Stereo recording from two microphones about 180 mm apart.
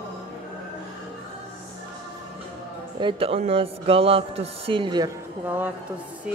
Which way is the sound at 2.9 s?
30° right (ahead or behind).